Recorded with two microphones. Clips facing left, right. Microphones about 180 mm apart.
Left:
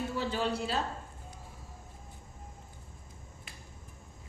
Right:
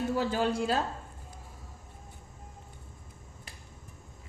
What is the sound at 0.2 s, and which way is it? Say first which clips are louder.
Speech: right 2 dB; 45° right (ahead or behind).